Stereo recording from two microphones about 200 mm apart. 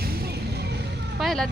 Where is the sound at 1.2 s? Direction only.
Centre (ahead or behind).